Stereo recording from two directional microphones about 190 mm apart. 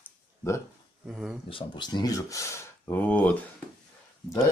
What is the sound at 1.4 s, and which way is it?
Speech, 25° left (ahead or behind).